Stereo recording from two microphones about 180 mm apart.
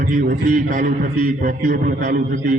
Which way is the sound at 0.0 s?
45° right (ahead or behind).